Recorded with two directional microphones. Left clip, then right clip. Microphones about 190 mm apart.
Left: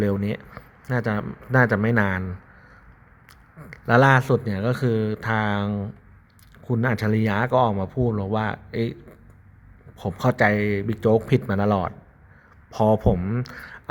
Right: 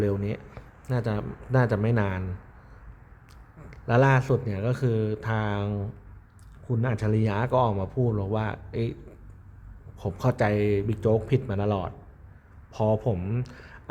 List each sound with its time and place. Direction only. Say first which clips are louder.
0.0 s speech: left 3 dB; 20° left (ahead or behind)
3.7 s speech: left 6 dB; 20° left (ahead or behind)
10.0 s speech: left 6 dB; 20° left (ahead or behind)